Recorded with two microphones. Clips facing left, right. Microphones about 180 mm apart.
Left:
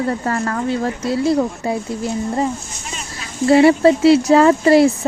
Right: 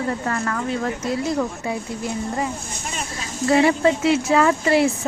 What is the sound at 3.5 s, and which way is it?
Speech, 30° left (ahead or behind).